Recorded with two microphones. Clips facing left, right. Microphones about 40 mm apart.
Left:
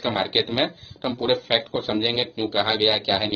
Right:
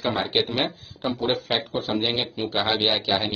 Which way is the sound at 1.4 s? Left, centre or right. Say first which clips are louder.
Left 3 dB; left.